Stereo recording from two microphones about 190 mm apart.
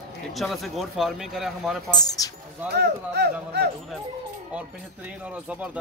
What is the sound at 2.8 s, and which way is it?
Speech, 60° right (ahead or behind).